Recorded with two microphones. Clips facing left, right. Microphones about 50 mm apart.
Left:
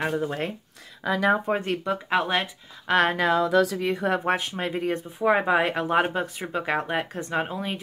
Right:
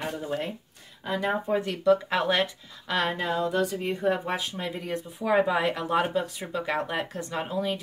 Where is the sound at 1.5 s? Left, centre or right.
Left.